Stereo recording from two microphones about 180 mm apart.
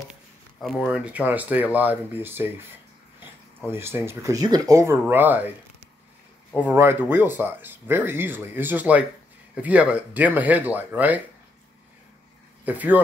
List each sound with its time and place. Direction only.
0.1 s speech: centre (ahead or behind)
3.7 s speech: 15° right (ahead or behind)
6.5 s speech: 10° right (ahead or behind)
12.6 s speech: 10° right (ahead or behind)